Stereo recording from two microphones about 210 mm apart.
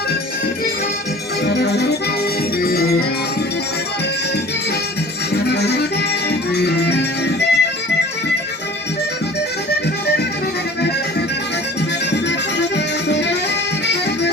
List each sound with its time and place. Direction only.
1.5 s music: 50° left (ahead or behind)
5.5 s music: 50° left (ahead or behind)
12.1 s music: 55° left (ahead or behind)